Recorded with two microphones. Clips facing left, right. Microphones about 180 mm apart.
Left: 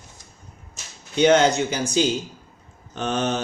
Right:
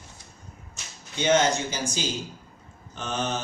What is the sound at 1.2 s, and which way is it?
Speech, 65° left (ahead or behind).